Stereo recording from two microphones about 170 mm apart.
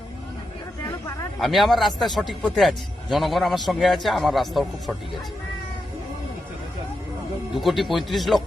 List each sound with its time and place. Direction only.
1.4 s a man's voice: centre (ahead or behind)
7.5 s a man's voice: centre (ahead or behind)